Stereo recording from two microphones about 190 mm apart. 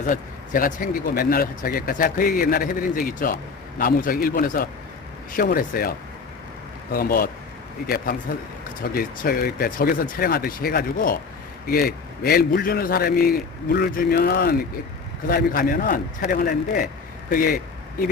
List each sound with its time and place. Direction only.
0.0 s speech: 45° left (ahead or behind)
6.9 s speech: 50° left (ahead or behind)